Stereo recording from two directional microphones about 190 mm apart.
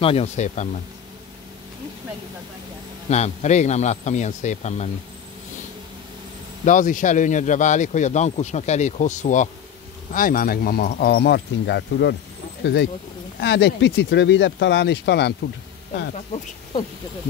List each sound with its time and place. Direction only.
0.0 s speech: 30° left (ahead or behind)
3.1 s speech: 35° left (ahead or behind)
6.6 s speech: 40° left (ahead or behind); by 12.2 s 65° left (ahead or behind)
13.4 s speech: 65° left (ahead or behind)